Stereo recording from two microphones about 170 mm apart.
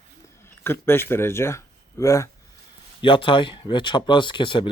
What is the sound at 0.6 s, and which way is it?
Speech, 15° left (ahead or behind).